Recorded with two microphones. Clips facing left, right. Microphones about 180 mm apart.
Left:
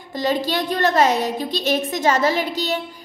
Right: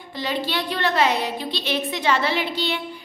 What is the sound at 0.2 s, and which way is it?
A woman's voice, 45° left (ahead or behind).